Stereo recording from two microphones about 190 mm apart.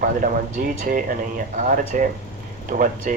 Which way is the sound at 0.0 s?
45° right (ahead or behind).